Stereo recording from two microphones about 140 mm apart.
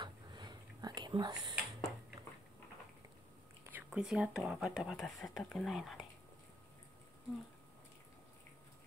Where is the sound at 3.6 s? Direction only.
10° right (ahead or behind).